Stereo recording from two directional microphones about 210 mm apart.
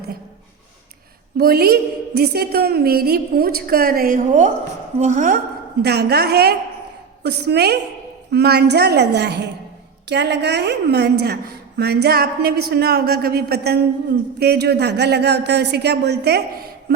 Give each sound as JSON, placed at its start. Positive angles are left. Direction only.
{"t": 1.4, "sound": "a woman's voice", "side_deg": -50}
{"t": 5.8, "sound": "a woman's voice", "side_deg": -50}